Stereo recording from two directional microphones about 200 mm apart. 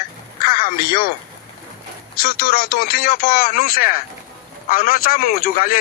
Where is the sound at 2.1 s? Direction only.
50° left (ahead or behind).